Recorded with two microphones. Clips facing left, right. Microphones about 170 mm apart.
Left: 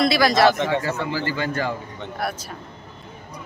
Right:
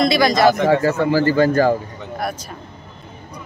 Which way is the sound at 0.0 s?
5° left (ahead or behind).